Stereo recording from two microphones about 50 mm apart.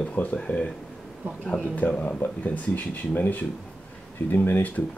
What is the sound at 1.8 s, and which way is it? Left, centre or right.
Speech, left.